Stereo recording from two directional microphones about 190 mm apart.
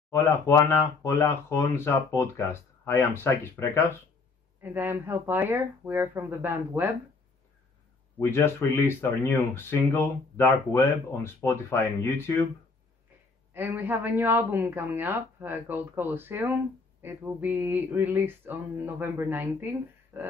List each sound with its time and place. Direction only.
0.1 s speech: 15° left (ahead or behind)
4.6 s speech: 10° right (ahead or behind)
8.2 s speech: 15° left (ahead or behind)
13.5 s speech: 10° right (ahead or behind)